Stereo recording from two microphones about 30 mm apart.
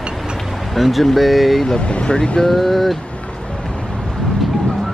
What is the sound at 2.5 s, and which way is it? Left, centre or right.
Speech, centre.